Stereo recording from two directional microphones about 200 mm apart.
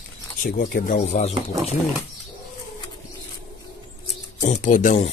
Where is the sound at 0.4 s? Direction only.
50° left (ahead or behind).